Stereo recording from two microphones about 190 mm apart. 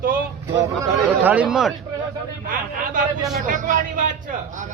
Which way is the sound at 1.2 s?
5° right (ahead or behind).